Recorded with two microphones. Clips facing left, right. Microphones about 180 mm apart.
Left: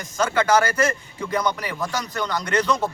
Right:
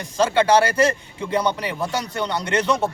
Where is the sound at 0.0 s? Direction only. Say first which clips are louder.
Right 3 dB; 30° right (ahead or behind).